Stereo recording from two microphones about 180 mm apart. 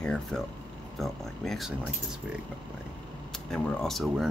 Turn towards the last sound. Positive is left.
turn(degrees=0)  # may be behind; listen again after turning